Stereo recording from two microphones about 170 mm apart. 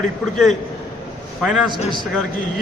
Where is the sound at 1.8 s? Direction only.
30° left (ahead or behind).